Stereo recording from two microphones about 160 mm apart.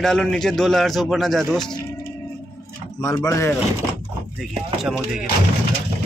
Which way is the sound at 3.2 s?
20° left (ahead or behind).